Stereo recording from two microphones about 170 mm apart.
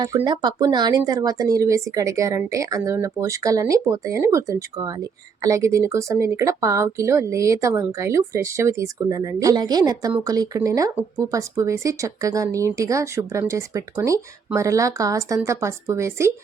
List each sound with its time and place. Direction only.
0.0 s speech: 20° right (ahead or behind)